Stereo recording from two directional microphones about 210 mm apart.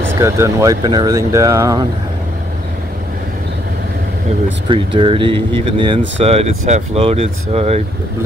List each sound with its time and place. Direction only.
0.1 s speech: 15° right (ahead or behind)
4.6 s speech: 25° right (ahead or behind)